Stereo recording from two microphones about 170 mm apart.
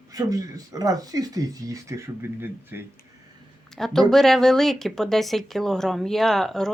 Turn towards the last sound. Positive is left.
turn(degrees=0)  # may be behind; listen again after turning